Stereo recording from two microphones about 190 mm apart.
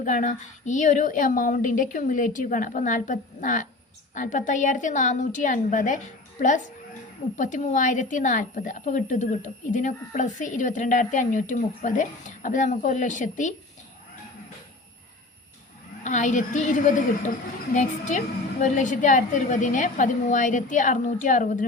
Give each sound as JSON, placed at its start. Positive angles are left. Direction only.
{"t": 0.0, "sound": "a woman's voice", "side_deg": 40}
{"t": 7.3, "sound": "a woman's voice", "side_deg": 40}
{"t": 16.0, "sound": "a woman's voice", "side_deg": 40}